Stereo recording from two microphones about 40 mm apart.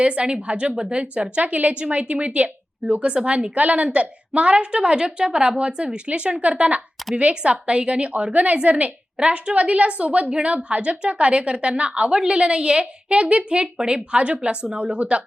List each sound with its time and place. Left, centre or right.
0.0 s a woman's voice: right